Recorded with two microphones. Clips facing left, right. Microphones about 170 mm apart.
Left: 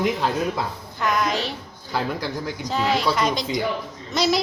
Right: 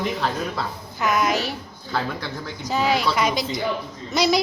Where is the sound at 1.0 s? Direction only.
Centre (ahead or behind).